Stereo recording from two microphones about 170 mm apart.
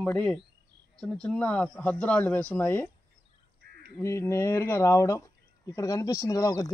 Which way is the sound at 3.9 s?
15° left (ahead or behind).